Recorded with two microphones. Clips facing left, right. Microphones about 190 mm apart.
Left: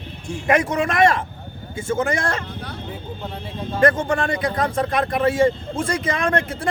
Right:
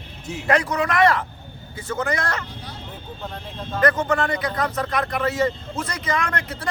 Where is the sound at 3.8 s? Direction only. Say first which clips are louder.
Left 2 dB; 25° left (ahead or behind).